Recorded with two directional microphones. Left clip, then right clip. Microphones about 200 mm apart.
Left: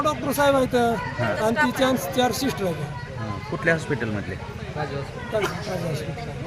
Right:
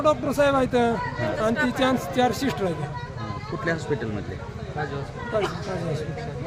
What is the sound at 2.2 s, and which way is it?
Speech, 10° right (ahead or behind).